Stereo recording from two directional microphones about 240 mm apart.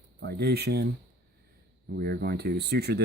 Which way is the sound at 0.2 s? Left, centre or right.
Right.